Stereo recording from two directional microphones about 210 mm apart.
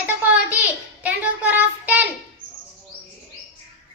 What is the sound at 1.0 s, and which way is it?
Child singing, 5° right (ahead or behind).